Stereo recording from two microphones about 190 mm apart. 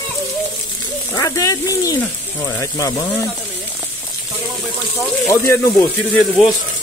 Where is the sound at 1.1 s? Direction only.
15° left (ahead or behind).